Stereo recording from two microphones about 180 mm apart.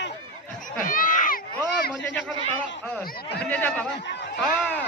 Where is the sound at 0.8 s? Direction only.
50° left (ahead or behind).